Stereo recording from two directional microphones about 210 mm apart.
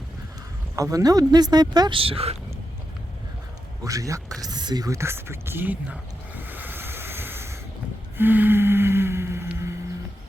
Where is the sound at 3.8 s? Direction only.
15° right (ahead or behind).